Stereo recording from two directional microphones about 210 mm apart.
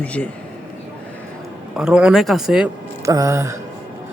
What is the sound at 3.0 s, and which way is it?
Speech, 15° right (ahead or behind).